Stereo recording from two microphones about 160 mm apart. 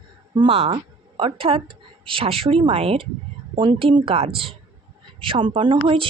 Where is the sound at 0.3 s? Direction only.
35° right (ahead or behind).